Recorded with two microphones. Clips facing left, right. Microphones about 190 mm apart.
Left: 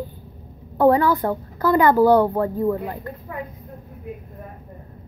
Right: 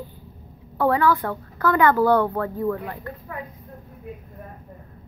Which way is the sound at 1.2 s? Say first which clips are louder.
Left 5 dB; 25° left (ahead or behind).